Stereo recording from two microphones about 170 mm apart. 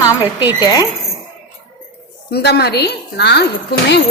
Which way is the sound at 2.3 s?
75° left (ahead or behind).